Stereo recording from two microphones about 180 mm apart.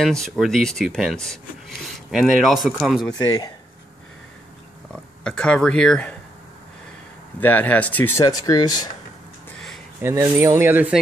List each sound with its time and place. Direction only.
0.0 s speech: 5° left (ahead or behind)
5.2 s speech: 5° left (ahead or behind)
7.3 s speech: 10° left (ahead or behind)
8.3 s speech: 20° left (ahead or behind)
10.0 s speech: 15° right (ahead or behind)